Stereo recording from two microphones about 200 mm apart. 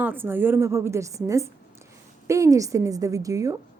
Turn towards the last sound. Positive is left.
turn(degrees=-15)  # may be behind; listen again after turning